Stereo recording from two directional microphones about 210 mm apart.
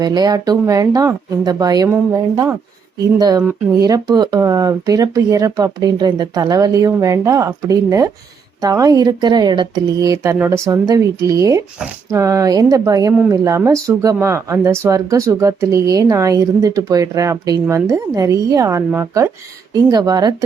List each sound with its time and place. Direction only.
0.0 s speech: 20° right (ahead or behind)